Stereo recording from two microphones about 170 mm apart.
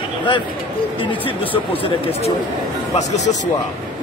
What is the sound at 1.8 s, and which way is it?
Speech, 35° left (ahead or behind).